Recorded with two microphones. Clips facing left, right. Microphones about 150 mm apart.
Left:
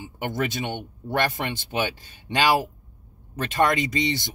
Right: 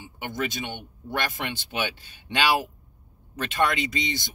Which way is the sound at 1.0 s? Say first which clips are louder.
Left 5 dB; 35° left (ahead or behind).